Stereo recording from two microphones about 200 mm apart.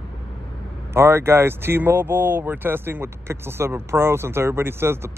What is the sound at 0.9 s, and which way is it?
Speech, 10° right (ahead or behind).